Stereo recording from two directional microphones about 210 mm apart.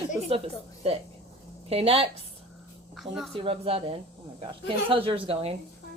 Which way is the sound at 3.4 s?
25° right (ahead or behind).